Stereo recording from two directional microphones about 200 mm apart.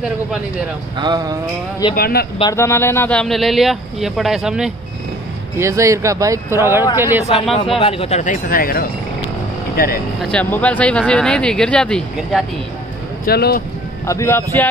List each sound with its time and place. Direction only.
0.9 s speech: 20° right (ahead or behind)
2.0 s speech: 50° left (ahead or behind)
2.5 s speech: 15° left (ahead or behind); by 4.7 s centre (ahead or behind)
5.6 s speech: 15° right (ahead or behind)
7.8 s speech: 30° left (ahead or behind); by 9.9 s 50° left (ahead or behind)
10.3 s speech: 5° left (ahead or behind)
13.2 s speech: 50° left (ahead or behind)
14.0 s speech: 15° left (ahead or behind)